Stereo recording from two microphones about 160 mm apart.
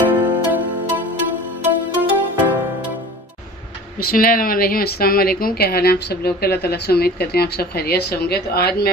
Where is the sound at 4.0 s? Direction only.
65° left (ahead or behind).